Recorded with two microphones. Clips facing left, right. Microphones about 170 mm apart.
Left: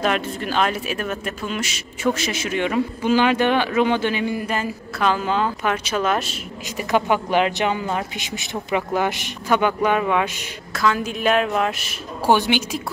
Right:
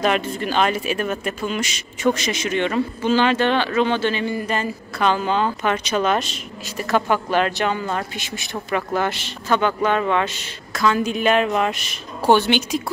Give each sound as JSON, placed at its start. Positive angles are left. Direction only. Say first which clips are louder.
{"t": 0.0, "sound": "speech", "louder": "right 2 dB", "side_deg": 0}
{"t": 6.8, "sound": "a man's voice", "louder": "even", "side_deg": 15}